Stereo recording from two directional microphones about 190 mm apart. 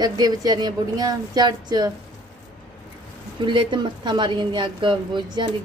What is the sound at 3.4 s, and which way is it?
A woman's voice, 25° right (ahead or behind).